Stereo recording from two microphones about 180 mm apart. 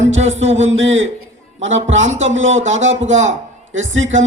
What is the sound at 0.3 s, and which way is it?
Speech, 90° right.